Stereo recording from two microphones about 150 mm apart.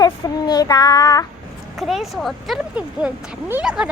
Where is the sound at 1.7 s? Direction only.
Centre (ahead or behind).